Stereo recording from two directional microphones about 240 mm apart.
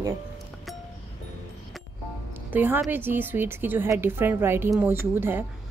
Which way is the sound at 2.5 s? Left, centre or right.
Centre.